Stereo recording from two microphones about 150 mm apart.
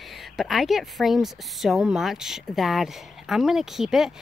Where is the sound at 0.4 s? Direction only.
Centre (ahead or behind).